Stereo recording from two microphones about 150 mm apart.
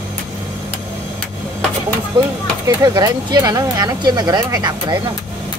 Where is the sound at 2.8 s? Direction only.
30° right (ahead or behind).